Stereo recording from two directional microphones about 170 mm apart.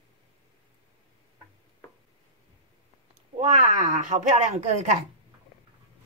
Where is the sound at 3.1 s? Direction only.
40° right (ahead or behind).